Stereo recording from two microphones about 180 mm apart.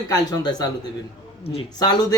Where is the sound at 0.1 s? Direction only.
20° left (ahead or behind).